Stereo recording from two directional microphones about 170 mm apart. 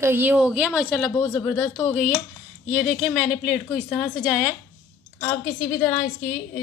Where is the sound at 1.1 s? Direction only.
20° left (ahead or behind).